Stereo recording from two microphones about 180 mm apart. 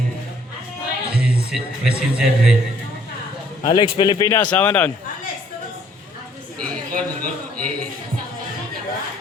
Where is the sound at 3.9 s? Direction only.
25° left (ahead or behind).